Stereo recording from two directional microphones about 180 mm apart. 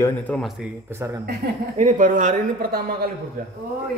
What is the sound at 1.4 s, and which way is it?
Speech, 60° right (ahead or behind).